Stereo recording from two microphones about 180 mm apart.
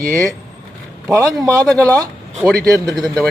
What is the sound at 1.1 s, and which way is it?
Speech, 15° right (ahead or behind).